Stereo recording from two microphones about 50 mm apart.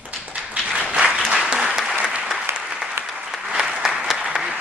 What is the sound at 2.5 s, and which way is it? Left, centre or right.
Applause, right.